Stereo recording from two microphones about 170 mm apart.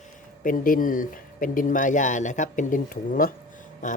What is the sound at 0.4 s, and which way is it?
Speech, 55° left (ahead or behind).